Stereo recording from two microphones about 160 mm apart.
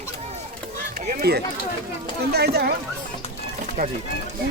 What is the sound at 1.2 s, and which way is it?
Speech, 90° right.